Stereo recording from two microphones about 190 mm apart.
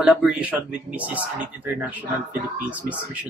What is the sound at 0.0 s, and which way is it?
Speech, 5° right (ahead or behind).